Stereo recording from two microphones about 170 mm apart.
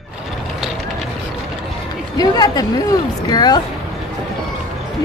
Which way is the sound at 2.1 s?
25° left (ahead or behind).